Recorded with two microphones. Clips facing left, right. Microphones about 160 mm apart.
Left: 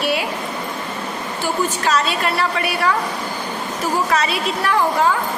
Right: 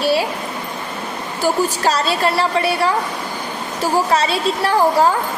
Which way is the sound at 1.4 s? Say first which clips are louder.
Right 4 dB; 35° right (ahead or behind).